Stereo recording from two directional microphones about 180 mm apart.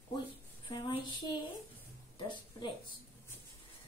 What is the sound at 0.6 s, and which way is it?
Speech, 25° left (ahead or behind).